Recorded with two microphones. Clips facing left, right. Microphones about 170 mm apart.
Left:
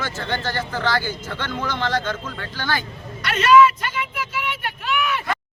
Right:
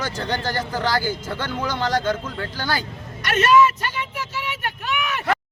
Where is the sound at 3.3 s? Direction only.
45° right (ahead or behind).